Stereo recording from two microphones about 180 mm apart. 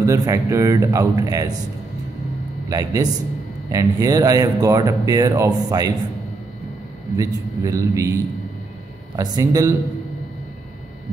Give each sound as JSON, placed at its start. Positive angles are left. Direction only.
{"t": 0.0, "sound": "speech", "side_deg": -20}
{"t": 2.7, "sound": "speech", "side_deg": -20}
{"t": 7.2, "sound": "speech", "side_deg": -20}
{"t": 9.1, "sound": "speech", "side_deg": -20}